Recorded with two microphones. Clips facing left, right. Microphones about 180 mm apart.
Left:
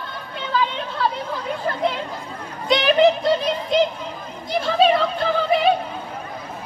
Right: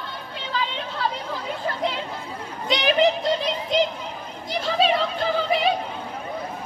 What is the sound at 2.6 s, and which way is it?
Children playing, 50° left (ahead or behind).